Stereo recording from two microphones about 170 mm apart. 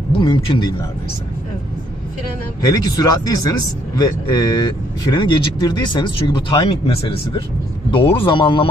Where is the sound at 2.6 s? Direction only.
20° left (ahead or behind).